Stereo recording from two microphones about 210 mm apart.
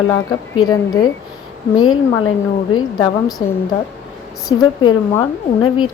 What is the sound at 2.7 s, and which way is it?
Speech, 20° left (ahead or behind).